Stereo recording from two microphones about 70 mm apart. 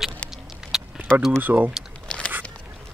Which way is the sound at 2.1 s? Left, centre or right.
Centre.